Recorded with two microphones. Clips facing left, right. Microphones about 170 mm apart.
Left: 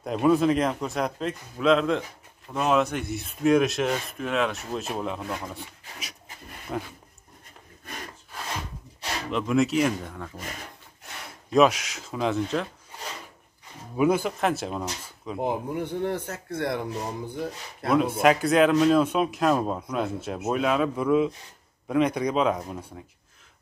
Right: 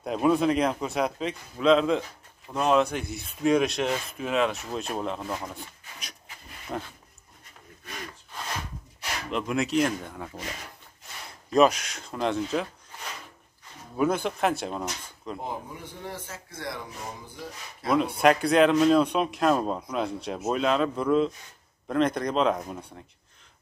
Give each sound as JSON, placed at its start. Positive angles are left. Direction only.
{"t": 0.0, "sound": "a man's voice", "side_deg": 0}
{"t": 9.3, "sound": "a man's voice", "side_deg": 0}
{"t": 11.5, "sound": "a man's voice", "side_deg": 0}
{"t": 13.9, "sound": "a man's voice", "side_deg": 5}
{"t": 15.3, "sound": "speech", "side_deg": 60}
{"t": 17.8, "sound": "a man's voice", "side_deg": 0}